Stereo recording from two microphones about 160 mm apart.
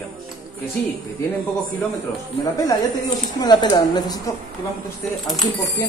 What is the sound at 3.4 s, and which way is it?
Speech, 25° left (ahead or behind).